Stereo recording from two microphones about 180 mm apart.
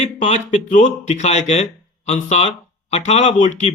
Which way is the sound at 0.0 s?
40° left (ahead or behind).